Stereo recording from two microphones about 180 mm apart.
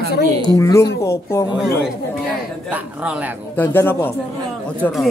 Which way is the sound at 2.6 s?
5° right (ahead or behind).